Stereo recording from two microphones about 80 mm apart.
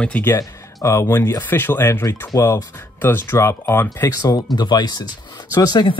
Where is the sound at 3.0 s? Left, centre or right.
Left.